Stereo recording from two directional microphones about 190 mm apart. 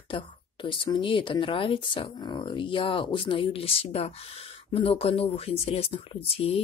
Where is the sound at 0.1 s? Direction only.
25° left (ahead or behind).